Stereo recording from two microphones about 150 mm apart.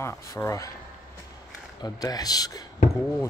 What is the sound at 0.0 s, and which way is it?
Speech, 20° left (ahead or behind).